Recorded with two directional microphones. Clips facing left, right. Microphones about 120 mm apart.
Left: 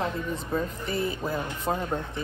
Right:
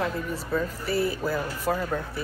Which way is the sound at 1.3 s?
25° left (ahead or behind).